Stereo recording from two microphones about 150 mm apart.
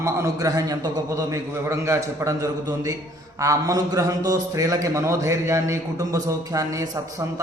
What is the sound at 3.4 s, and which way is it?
A man's voice, 20° right (ahead or behind).